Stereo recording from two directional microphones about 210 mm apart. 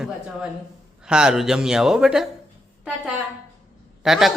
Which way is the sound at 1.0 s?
5° right (ahead or behind).